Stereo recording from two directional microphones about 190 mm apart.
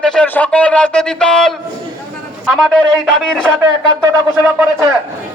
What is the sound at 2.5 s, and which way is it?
Speech, 5° left (ahead or behind).